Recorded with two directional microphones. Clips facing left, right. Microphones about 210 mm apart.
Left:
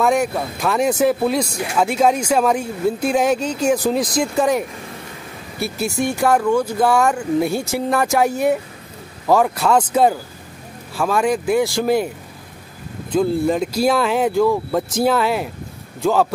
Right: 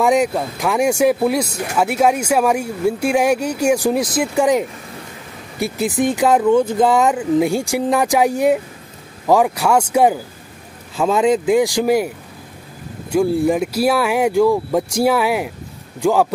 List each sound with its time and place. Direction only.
0.0 s speech: 15° right (ahead or behind)
5.6 s speech: 15° right (ahead or behind)
11.0 s speech: 20° right (ahead or behind)
13.1 s speech: 10° right (ahead or behind)